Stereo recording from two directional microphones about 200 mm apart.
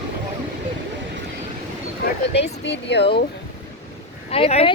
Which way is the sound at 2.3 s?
60° left (ahead or behind).